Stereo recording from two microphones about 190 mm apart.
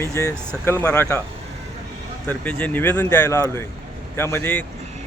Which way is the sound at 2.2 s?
10° left (ahead or behind).